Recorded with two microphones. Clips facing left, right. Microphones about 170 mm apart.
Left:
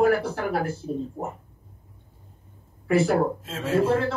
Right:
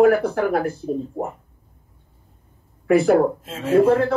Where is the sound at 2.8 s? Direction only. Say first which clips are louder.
Right 5 dB; 55° right (ahead or behind).